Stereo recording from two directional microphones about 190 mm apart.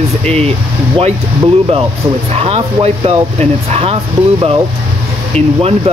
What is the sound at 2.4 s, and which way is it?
Speech, 30° right (ahead or behind).